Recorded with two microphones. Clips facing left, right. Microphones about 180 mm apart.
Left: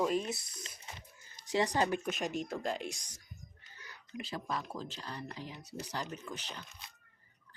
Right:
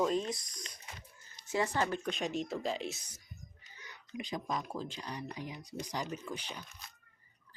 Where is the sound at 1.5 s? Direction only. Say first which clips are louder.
Left 2 dB; 15° left (ahead or behind).